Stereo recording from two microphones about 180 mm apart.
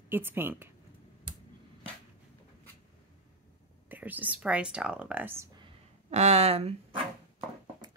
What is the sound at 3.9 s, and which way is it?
Speech, 10° right (ahead or behind).